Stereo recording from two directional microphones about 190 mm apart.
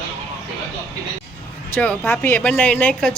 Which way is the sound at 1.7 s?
10° left (ahead or behind).